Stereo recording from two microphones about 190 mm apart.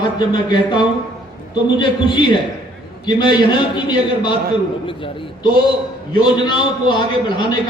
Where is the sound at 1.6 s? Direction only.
25° left (ahead or behind).